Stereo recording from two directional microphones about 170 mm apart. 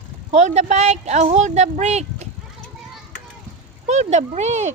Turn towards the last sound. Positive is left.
turn(degrees=-40)  # may be behind; listen again after turning